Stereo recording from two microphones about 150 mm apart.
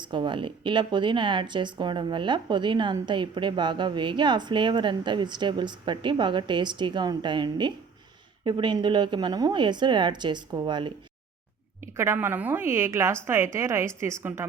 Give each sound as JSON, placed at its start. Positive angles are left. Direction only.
{"t": 0.0, "sound": "speech", "side_deg": -30}
{"t": 11.8, "sound": "a woman's voice", "side_deg": -15}